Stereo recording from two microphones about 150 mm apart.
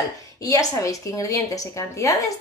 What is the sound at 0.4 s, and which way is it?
A woman's voice, 25° left (ahead or behind).